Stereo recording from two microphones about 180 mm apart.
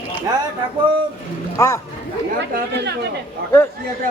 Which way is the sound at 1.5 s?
15° left (ahead or behind).